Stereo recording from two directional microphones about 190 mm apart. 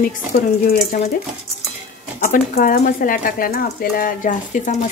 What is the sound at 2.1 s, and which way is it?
Dishes, 40° left (ahead or behind).